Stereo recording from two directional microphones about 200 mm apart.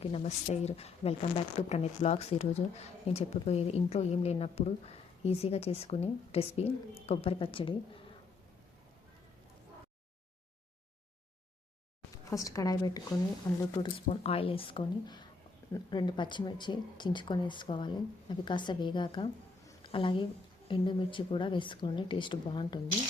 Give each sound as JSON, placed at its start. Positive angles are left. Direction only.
{"t": 0.0, "sound": "a woman's voice", "side_deg": 30}
{"t": 12.1, "sound": "speech", "side_deg": 15}